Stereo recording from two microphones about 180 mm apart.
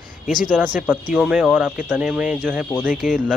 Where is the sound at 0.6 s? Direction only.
10° right (ahead or behind).